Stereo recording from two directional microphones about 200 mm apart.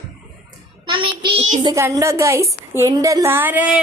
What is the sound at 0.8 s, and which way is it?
A child's voice, 25° right (ahead or behind).